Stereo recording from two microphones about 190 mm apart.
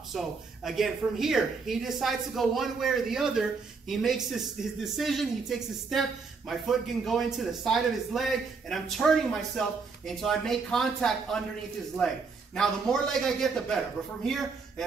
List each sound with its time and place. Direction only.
0.1 s a man's voice: centre (ahead or behind)
12.5 s a man's voice: 5° left (ahead or behind)